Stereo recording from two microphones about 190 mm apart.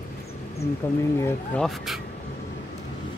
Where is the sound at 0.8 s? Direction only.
10° left (ahead or behind).